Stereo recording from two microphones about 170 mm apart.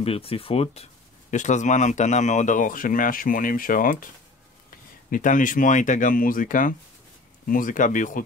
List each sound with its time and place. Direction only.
0.0 s speech: 35° left (ahead or behind)
1.3 s speech: 45° left (ahead or behind)
5.1 s speech: 50° left (ahead or behind)